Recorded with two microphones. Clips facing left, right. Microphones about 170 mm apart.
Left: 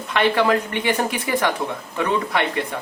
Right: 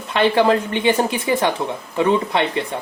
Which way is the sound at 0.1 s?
30° right (ahead or behind).